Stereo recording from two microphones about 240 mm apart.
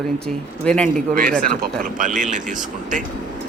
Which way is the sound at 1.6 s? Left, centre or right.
Right.